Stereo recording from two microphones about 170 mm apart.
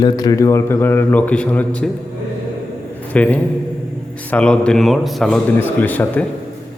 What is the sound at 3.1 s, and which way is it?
A man's voice, 10° left (ahead or behind).